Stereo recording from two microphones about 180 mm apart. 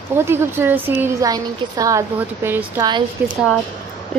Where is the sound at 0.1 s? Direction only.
15° right (ahead or behind).